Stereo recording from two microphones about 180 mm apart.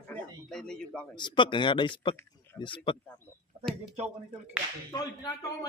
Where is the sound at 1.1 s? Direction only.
25° left (ahead or behind).